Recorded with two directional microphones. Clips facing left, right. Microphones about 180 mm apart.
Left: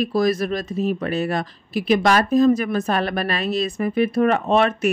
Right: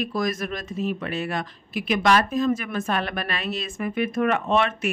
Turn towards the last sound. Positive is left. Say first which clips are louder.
# left 5 dB
turn(degrees=40)  # may be behind; listen again after turning